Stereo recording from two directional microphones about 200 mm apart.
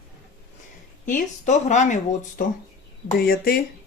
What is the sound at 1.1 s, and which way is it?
Speech, 40° left (ahead or behind).